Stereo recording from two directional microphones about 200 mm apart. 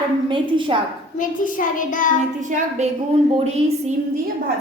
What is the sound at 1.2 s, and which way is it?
Speech, 40° left (ahead or behind).